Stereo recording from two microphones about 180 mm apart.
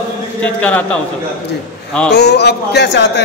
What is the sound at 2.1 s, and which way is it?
A man's voice, 65° left (ahead or behind).